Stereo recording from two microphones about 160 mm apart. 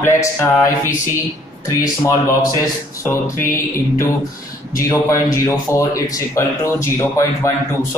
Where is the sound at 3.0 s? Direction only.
15° left (ahead or behind).